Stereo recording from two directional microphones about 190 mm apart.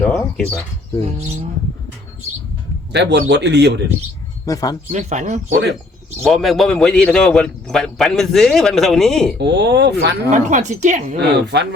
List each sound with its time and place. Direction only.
0.0 s speech: 5° left (ahead or behind)
1.0 s a woman's voice: 35° right (ahead or behind)
2.9 s speech: 65° right (ahead or behind)
4.4 s speech: 20° left (ahead or behind)
4.9 s a woman's voice: 40° right (ahead or behind)
5.5 s speech: 65° right (ahead or behind)
6.2 s speech: centre (ahead or behind)
9.4 s speech: 60° right (ahead or behind)
10.3 s a woman's voice: 40° right (ahead or behind)
11.2 s speech: 65° right (ahead or behind)